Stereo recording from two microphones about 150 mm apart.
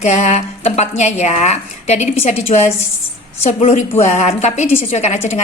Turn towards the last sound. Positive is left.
turn(degrees=50)  # may be behind; listen again after turning